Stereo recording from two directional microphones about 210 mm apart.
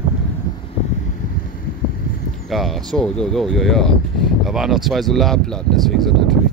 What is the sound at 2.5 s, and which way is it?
Speech, centre (ahead or behind).